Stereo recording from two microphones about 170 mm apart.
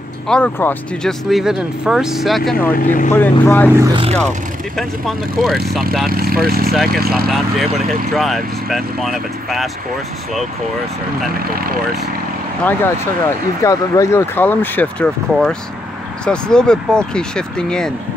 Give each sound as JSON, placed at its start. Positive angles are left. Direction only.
{"t": 0.3, "sound": "speech", "side_deg": 10}
{"t": 1.3, "sound": "speech", "side_deg": -5}
{"t": 2.7, "sound": "speech", "side_deg": 50}
{"t": 3.1, "sound": "speech", "side_deg": 10}
{"t": 3.8, "sound": "speech", "side_deg": -30}
{"t": 4.7, "sound": "speech", "side_deg": 0}
{"t": 6.0, "sound": "speech", "side_deg": -60}
{"t": 7.2, "sound": "speech", "side_deg": 0}
{"t": 12.6, "sound": "speech", "side_deg": 15}
{"t": 16.3, "sound": "speech", "side_deg": 5}